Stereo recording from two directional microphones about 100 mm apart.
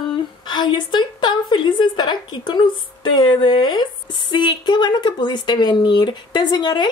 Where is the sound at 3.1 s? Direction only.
50° left (ahead or behind).